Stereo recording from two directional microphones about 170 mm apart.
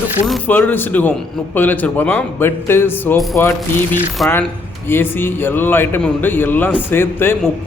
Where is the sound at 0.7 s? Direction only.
10° left (ahead or behind).